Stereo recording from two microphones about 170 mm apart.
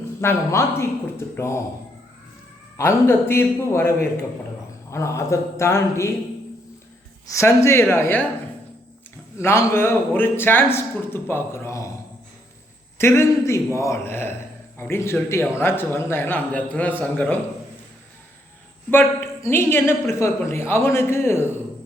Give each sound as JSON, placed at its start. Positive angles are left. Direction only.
{"t": 0.2, "sound": "a woman's voice", "side_deg": 15}
{"t": 2.7, "sound": "a woman's voice", "side_deg": 15}
{"t": 7.3, "sound": "a woman's voice", "side_deg": 15}
{"t": 9.4, "sound": "a woman's voice", "side_deg": 15}
{"t": 13.0, "sound": "a woman's voice", "side_deg": 15}
{"t": 18.9, "sound": "a woman's voice", "side_deg": 15}